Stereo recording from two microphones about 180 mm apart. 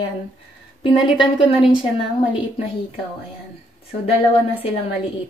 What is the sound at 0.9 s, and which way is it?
Speech, centre (ahead or behind).